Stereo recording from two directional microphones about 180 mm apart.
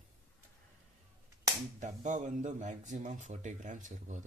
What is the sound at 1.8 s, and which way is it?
Speech, 45° right (ahead or behind).